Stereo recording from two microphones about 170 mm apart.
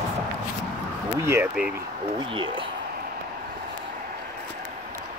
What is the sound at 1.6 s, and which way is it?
Speech, 5° right (ahead or behind).